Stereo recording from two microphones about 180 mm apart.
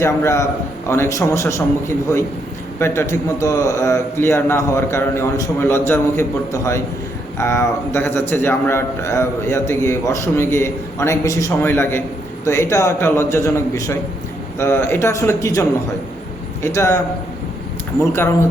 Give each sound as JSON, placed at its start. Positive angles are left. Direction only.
{"t": 0.0, "sound": "a man's voice", "side_deg": 15}
{"t": 2.7, "sound": "a man's voice", "side_deg": 15}
{"t": 16.6, "sound": "a man's voice", "side_deg": 15}